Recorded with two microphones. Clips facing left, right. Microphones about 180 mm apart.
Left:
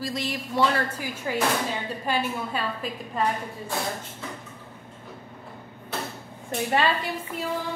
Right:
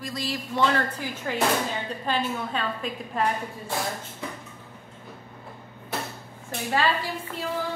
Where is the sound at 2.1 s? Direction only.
5° left (ahead or behind).